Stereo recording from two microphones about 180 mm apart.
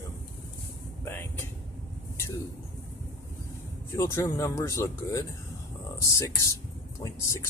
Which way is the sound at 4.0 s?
15° left (ahead or behind).